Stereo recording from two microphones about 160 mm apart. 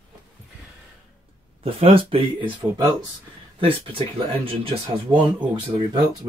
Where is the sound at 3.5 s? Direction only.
35° right (ahead or behind).